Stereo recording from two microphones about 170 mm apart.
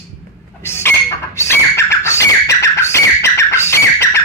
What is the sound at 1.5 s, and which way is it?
Bird, 15° left (ahead or behind).